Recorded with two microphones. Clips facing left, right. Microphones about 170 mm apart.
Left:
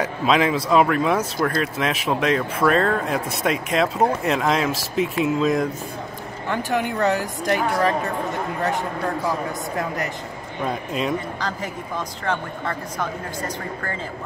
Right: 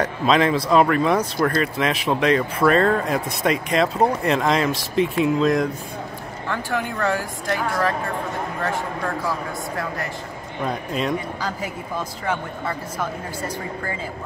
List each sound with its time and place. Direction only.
0.0 s speech: 5° left (ahead or behind)
6.5 s speech: 20° left (ahead or behind)
10.6 s speech: centre (ahead or behind)